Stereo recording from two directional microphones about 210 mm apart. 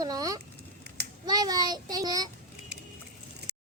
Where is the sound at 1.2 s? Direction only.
20° right (ahead or behind).